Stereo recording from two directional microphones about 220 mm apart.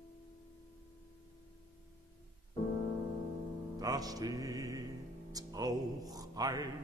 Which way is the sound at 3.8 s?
15° right (ahead or behind).